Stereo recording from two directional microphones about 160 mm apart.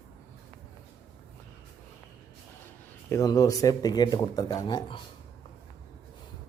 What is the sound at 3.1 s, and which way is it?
Speech, 20° left (ahead or behind).